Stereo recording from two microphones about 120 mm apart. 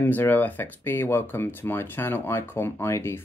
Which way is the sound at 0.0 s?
15° left (ahead or behind).